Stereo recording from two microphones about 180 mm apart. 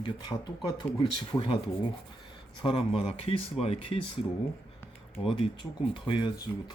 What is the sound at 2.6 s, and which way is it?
Speech, 30° left (ahead or behind).